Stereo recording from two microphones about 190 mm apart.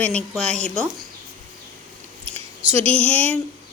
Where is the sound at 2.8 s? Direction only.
30° right (ahead or behind).